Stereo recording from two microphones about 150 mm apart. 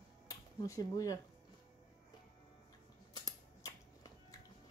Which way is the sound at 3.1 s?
25° left (ahead or behind).